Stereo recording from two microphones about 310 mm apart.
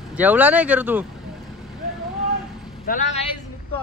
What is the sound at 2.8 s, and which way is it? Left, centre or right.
Speech, left.